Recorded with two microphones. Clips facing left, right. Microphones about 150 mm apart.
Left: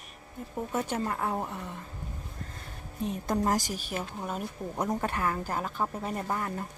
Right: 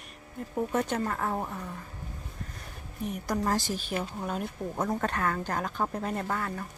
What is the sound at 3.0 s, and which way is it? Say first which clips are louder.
A woman's voice: left 1 dB; 25° left (ahead or behind).